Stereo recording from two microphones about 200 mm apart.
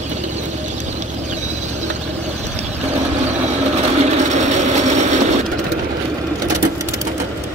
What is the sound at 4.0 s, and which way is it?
Vehicle, 35° right (ahead or behind).